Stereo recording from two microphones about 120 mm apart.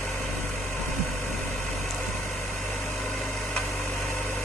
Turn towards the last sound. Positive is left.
turn(degrees=0)  # may be behind; listen again after turning